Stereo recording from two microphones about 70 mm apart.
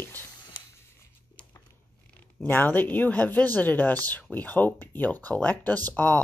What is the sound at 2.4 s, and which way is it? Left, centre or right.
Speech, left.